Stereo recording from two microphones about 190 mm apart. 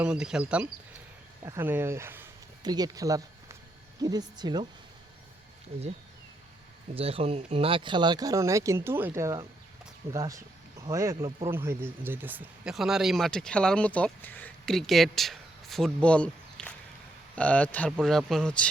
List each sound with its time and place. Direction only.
0.0 s speech: 5° right (ahead or behind); by 4.6 s 20° right (ahead or behind)
6.9 s speech: 30° right (ahead or behind); by 18.7 s 5° left (ahead or behind)